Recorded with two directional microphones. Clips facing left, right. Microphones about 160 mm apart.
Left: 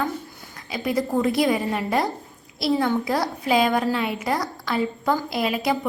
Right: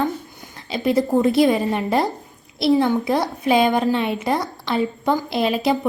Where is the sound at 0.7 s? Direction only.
25° right (ahead or behind).